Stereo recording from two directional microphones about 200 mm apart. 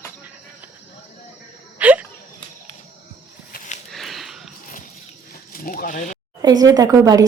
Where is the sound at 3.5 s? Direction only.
40° left (ahead or behind).